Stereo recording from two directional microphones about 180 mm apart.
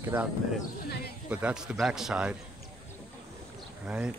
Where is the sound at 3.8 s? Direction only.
5° right (ahead or behind).